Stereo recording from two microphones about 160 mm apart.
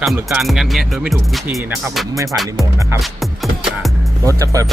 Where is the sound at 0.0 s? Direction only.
Centre (ahead or behind).